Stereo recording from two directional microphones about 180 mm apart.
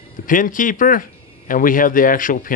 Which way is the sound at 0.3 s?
50° left (ahead or behind).